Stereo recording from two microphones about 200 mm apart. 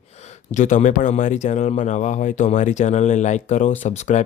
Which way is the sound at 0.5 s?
35° left (ahead or behind).